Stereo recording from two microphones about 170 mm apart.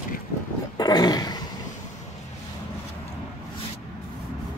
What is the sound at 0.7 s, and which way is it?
Roar, 25° left (ahead or behind).